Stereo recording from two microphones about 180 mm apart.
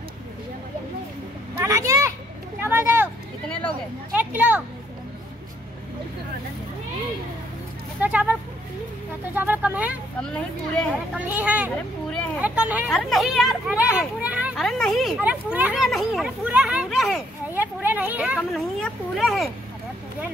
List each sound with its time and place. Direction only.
1.6 s children playing: 15° right (ahead or behind)
2.6 s a sound: 15° right (ahead or behind)
4.1 s speech: 10° right (ahead or behind)
8.0 s a sound: 10° right (ahead or behind)
9.3 s speech: 10° right (ahead or behind)
11.1 s speech: 10° right (ahead or behind)
12.4 s a sound: 10° right (ahead or behind)
12.9 s speech: centre (ahead or behind)
17.6 s speech: 10° right (ahead or behind)